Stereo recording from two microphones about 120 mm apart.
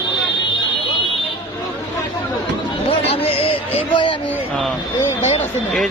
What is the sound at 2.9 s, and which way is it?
Music, 50° left (ahead or behind).